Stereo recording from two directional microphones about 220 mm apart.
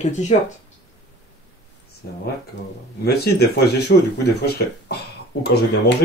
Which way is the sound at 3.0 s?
45° left (ahead or behind).